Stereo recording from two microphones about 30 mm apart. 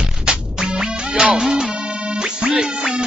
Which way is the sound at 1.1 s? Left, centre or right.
Right.